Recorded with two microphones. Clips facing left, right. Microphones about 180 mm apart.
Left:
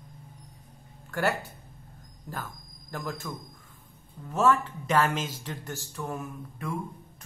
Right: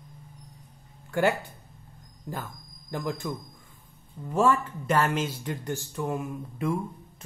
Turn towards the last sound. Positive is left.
turn(degrees=-20)  # may be behind; listen again after turning